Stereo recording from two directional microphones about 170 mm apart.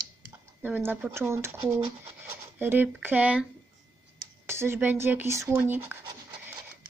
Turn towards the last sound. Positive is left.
turn(degrees=-10)  # may be behind; listen again after turning